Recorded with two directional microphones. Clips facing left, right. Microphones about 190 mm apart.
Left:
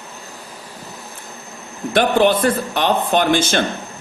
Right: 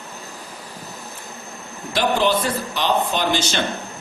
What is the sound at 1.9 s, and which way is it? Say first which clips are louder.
Speech: left 5 dB; 55° left (ahead or behind).